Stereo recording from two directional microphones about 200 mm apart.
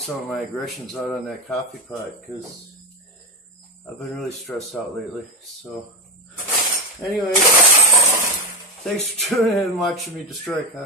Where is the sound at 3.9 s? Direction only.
Centre (ahead or behind).